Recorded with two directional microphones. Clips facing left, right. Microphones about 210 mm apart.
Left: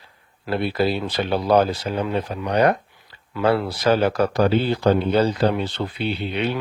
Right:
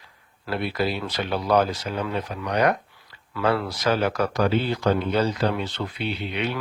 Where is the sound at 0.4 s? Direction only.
30° left (ahead or behind).